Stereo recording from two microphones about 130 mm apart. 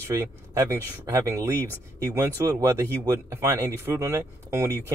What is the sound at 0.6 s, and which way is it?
Speech, 25° right (ahead or behind).